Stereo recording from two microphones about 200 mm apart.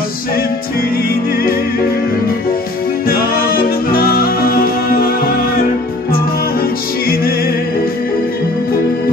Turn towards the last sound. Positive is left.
turn(degrees=50)  # may be behind; listen again after turning